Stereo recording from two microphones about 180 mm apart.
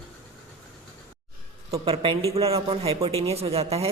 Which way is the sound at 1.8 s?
30° right (ahead or behind).